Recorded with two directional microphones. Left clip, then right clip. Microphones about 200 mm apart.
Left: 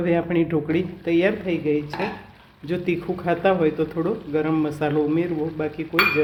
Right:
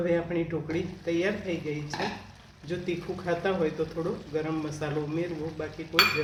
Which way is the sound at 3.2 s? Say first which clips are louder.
Left 8 dB; 50° left (ahead or behind).